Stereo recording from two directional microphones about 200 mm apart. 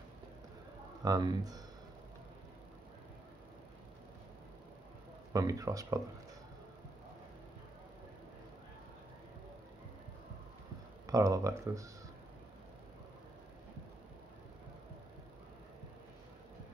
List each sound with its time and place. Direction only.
1.0 s speech: 20° right (ahead or behind)
5.3 s speech: 15° right (ahead or behind)
11.1 s speech: 15° right (ahead or behind)